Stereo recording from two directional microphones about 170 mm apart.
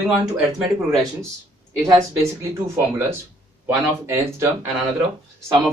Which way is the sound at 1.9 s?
15° right (ahead or behind).